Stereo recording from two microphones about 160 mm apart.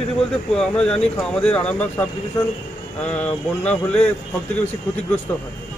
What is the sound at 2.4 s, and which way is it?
Speech, 20° left (ahead or behind).